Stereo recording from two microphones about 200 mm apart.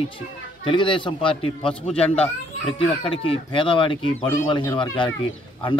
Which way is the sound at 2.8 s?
25° left (ahead or behind).